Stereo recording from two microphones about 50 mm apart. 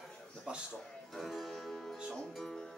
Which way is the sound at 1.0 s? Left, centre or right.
Centre.